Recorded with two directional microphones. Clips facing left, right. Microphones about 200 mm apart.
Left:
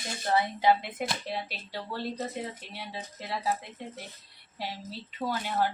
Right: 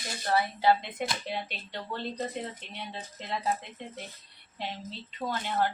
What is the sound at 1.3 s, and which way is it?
A woman's voice, centre (ahead or behind).